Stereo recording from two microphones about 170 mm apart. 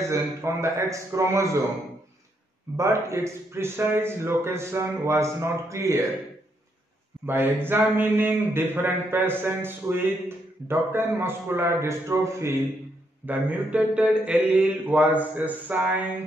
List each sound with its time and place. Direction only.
0.0 s a man's voice: 15° right (ahead or behind)
2.8 s a man's voice: 15° right (ahead or behind)
7.2 s a man's voice: 10° right (ahead or behind)